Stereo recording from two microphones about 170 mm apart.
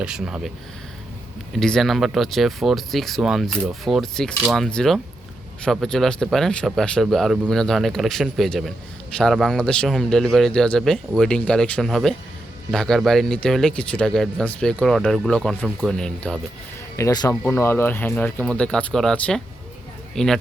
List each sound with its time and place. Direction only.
0.0 s speech: 5° right (ahead or behind)
1.5 s speech: centre (ahead or behind)
17.0 s speech: 20° left (ahead or behind); by 20.3 s 5° left (ahead or behind)